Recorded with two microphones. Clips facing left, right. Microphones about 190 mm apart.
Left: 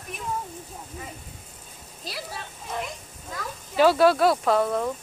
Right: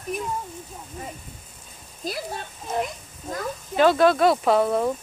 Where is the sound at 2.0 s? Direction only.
45° right (ahead or behind).